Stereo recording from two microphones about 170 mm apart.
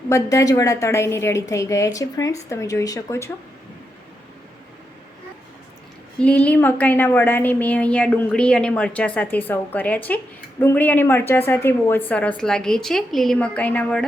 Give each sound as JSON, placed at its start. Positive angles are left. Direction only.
{"t": 0.1, "sound": "a woman's voice", "side_deg": 20}
{"t": 6.1, "sound": "a woman's voice", "side_deg": 10}